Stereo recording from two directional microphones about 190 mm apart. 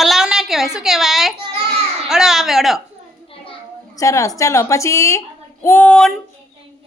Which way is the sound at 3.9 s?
15° left (ahead or behind).